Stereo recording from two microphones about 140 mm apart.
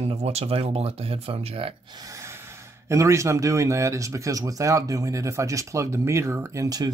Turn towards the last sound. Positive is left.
turn(degrees=-30)  # may be behind; listen again after turning